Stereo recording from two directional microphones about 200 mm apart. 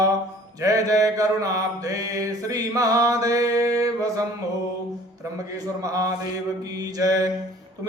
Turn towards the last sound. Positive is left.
turn(degrees=-15)  # may be behind; listen again after turning